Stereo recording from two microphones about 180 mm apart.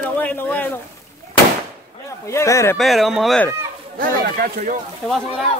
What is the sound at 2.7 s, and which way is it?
Speech, centre (ahead or behind).